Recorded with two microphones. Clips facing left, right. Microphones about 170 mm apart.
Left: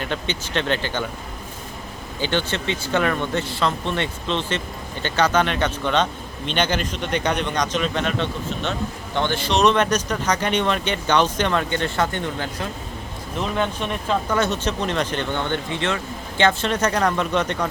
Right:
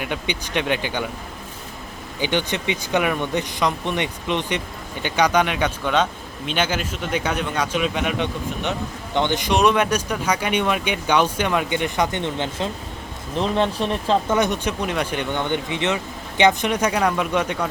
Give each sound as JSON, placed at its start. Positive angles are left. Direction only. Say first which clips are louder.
{"t": 0.0, "sound": "speech", "louder": "even", "side_deg": -10}
{"t": 2.2, "sound": "speech", "louder": "right 1 dB", "side_deg": -15}
{"t": 13.4, "sound": "speech", "louder": "right 3 dB", "side_deg": -30}
{"t": 14.3, "sound": "speech", "louder": "right 1 dB", "side_deg": -15}